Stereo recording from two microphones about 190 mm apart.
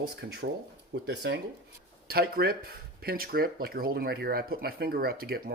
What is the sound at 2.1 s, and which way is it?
Speech, 50° right (ahead or behind).